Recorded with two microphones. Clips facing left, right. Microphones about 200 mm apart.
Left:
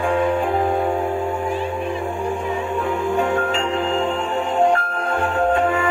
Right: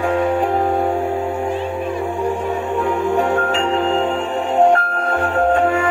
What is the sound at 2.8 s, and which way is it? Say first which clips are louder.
Music: right 5 dB; 75° right (ahead or behind).